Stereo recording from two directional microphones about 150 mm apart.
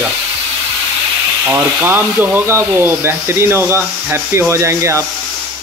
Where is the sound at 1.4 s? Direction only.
15° right (ahead or behind).